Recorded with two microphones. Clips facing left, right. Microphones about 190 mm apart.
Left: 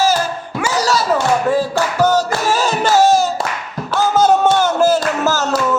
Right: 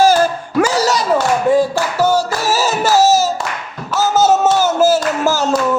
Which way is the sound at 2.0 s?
10° right (ahead or behind).